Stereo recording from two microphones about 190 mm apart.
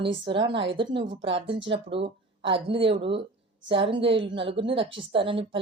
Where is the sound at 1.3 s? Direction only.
30° right (ahead or behind).